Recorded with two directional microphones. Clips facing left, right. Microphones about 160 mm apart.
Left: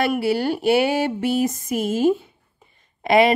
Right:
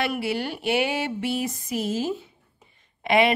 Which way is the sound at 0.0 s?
40° left (ahead or behind).